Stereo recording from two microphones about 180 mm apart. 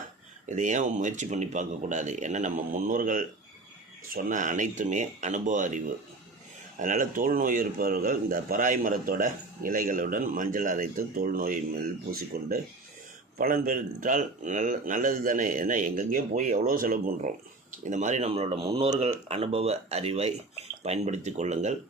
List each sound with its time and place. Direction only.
0.4 s speech: 45° right (ahead or behind)